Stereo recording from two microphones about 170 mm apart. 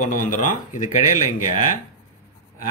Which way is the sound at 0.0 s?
50° left (ahead or behind).